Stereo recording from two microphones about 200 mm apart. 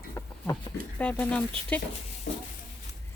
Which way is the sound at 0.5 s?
5° left (ahead or behind).